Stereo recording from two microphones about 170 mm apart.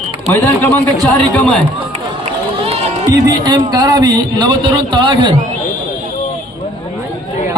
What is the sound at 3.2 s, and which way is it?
A man's voice, 25° right (ahead or behind).